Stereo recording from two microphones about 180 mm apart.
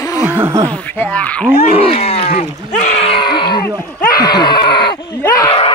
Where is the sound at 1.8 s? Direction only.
35° left (ahead or behind).